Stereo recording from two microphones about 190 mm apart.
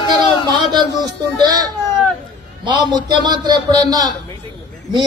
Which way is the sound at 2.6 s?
25° right (ahead or behind).